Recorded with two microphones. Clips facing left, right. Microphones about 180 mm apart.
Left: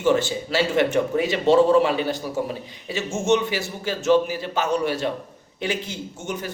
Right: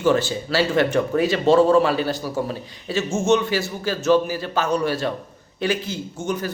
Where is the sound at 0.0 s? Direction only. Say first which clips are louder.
Right 1 dB; 20° left (ahead or behind).